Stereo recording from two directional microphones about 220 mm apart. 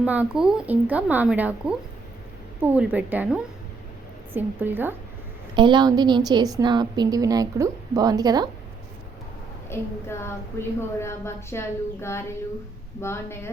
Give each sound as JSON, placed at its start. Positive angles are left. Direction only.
{"t": 0.0, "sound": "a woman's voice", "side_deg": -5}
{"t": 5.5, "sound": "a woman's voice", "side_deg": -20}
{"t": 9.6, "sound": "a woman's voice", "side_deg": 10}